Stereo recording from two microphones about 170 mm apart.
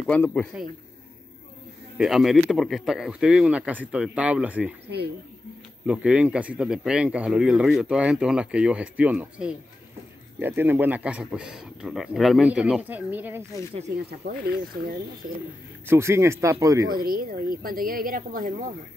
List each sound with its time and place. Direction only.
0.0 s speech: 10° left (ahead or behind)
2.0 s speech: centre (ahead or behind)
5.9 s a man's voice: 5° right (ahead or behind)
14.2 s speech: 65° right (ahead or behind)
15.9 s a man's voice: 15° right (ahead or behind)
17.0 s speech: 60° right (ahead or behind)